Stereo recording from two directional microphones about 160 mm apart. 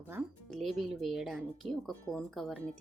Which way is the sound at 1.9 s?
10° left (ahead or behind).